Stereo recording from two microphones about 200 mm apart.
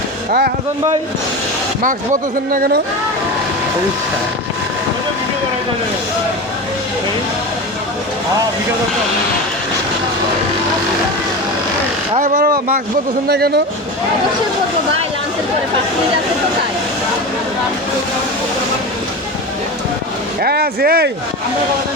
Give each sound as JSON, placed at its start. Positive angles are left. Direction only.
{"t": 0.3, "sound": "speech", "side_deg": -50}
{"t": 2.5, "sound": "speech", "side_deg": -45}
{"t": 12.2, "sound": "speech", "side_deg": -40}
{"t": 20.4, "sound": "speech", "side_deg": -50}